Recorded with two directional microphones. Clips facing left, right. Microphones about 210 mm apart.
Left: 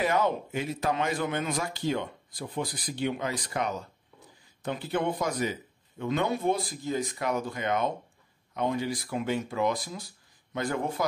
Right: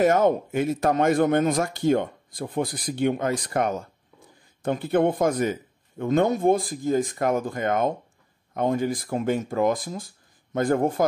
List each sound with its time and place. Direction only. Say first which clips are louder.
0.0 s speech: right 7 dB; 45° right (ahead or behind)